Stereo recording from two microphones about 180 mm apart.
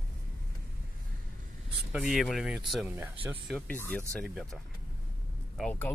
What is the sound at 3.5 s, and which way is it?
Speech, 10° left (ahead or behind).